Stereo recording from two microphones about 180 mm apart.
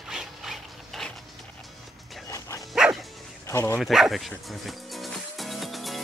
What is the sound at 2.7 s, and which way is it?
Dog, 5° right (ahead or behind).